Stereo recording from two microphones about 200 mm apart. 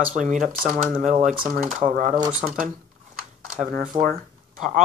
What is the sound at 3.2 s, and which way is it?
Camera, 40° right (ahead or behind).